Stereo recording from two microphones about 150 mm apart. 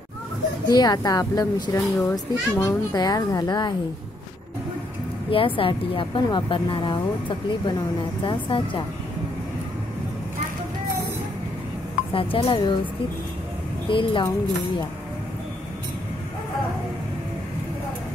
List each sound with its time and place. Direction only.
0.7 s a woman's voice: 25° left (ahead or behind)
5.3 s speech: 35° left (ahead or behind)
12.1 s speech: 35° left (ahead or behind)
13.8 s speech: 35° left (ahead or behind)